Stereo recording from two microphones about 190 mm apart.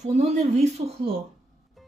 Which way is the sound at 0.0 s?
35° right (ahead or behind).